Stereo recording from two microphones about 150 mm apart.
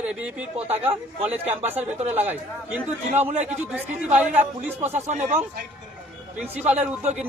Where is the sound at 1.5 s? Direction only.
15° right (ahead or behind).